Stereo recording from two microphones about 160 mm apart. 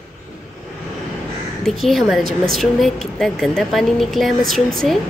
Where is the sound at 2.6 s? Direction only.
Centre (ahead or behind).